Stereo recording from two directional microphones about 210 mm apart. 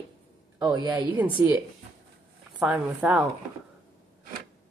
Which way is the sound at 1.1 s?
10° right (ahead or behind).